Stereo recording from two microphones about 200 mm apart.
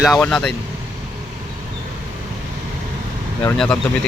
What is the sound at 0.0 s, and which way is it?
Speech, centre (ahead or behind).